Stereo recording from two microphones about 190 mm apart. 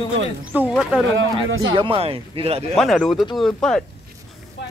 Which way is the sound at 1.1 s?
90° right.